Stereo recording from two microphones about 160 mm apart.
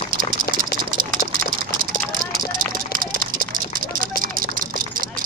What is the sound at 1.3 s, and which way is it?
Vehicle, 65° right (ahead or behind).